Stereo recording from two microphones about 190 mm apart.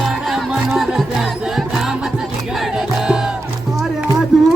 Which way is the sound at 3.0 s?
5° right (ahead or behind).